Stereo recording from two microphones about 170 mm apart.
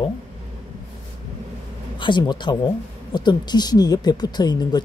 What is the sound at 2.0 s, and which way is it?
Speech, 25° left (ahead or behind).